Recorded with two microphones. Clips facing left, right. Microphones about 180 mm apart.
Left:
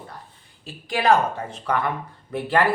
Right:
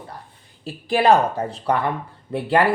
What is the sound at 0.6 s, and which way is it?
Speech, 35° right (ahead or behind).